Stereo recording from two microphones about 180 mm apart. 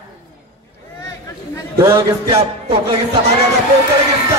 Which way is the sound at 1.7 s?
15° right (ahead or behind).